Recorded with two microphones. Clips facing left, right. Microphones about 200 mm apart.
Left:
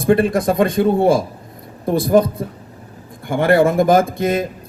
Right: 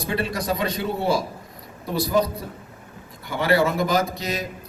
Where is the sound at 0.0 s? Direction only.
50° left (ahead or behind).